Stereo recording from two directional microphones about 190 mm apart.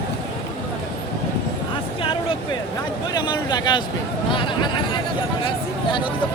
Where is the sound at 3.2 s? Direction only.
20° left (ahead or behind).